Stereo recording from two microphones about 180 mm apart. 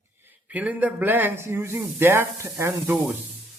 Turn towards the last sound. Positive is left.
turn(degrees=-10)  # may be behind; listen again after turning